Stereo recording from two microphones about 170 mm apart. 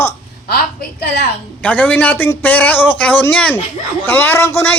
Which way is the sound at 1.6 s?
10° left (ahead or behind).